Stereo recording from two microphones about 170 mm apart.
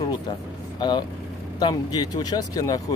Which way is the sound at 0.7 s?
25° left (ahead or behind).